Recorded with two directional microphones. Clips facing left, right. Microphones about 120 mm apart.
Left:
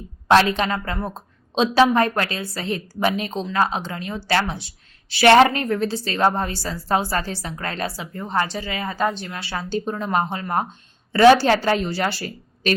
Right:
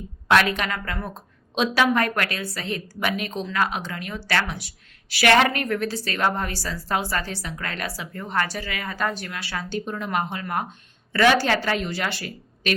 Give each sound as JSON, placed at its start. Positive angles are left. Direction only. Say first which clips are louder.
{"t": 0.3, "sound": "a woman's voice", "louder": "left 4 dB", "side_deg": 30}